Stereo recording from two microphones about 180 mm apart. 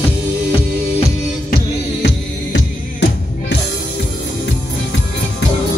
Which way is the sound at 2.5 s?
75° left (ahead or behind).